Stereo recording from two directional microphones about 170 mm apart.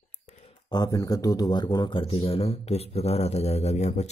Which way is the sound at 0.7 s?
20° left (ahead or behind).